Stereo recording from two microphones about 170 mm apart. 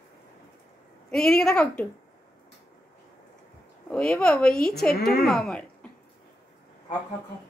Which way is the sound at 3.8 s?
5° left (ahead or behind).